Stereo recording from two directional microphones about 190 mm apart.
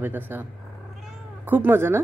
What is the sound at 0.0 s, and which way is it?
Speech, 10° right (ahead or behind).